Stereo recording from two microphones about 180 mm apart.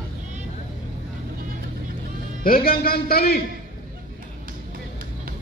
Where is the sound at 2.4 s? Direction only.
55° left (ahead or behind).